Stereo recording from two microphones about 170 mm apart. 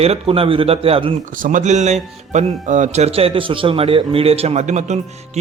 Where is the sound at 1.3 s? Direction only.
50° right (ahead or behind).